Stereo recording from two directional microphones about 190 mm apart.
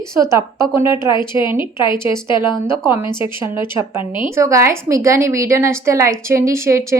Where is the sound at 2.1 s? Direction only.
25° left (ahead or behind).